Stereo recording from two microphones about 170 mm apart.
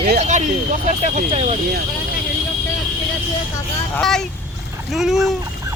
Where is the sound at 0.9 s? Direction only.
45° right (ahead or behind).